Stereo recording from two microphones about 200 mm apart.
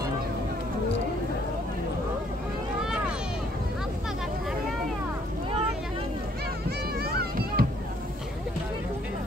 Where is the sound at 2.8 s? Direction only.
5° right (ahead or behind).